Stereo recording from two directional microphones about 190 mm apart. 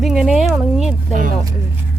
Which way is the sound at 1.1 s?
45° right (ahead or behind).